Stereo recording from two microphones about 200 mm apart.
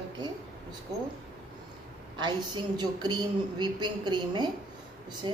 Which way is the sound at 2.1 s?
20° right (ahead or behind).